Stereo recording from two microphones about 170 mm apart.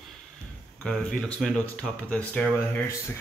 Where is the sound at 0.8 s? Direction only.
5° left (ahead or behind).